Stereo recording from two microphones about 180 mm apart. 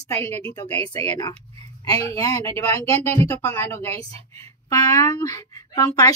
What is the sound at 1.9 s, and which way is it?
A woman's voice, 20° left (ahead or behind).